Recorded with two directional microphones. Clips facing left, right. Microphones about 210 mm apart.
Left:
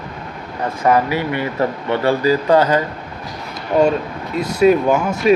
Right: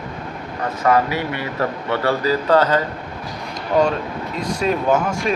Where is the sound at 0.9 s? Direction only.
15° left (ahead or behind).